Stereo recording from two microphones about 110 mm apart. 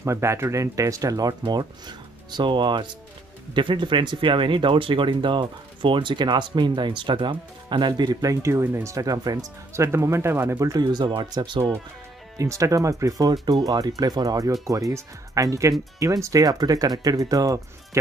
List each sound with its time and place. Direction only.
0.0 s speech: 25° right (ahead or behind)
10.7 s speech: 40° right (ahead or behind)
12.4 s speech: 30° right (ahead or behind)